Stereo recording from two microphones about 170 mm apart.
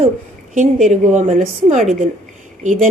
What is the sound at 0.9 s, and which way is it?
A woman's voice, 40° right (ahead or behind).